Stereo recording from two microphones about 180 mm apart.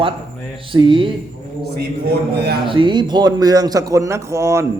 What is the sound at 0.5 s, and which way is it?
Speech, 30° right (ahead or behind).